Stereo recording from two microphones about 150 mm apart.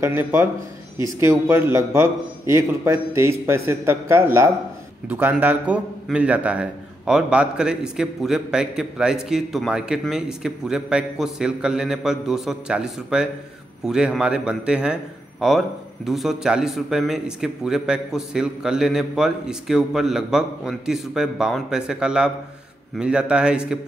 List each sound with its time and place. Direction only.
0.0 s a man's voice: 15° right (ahead or behind)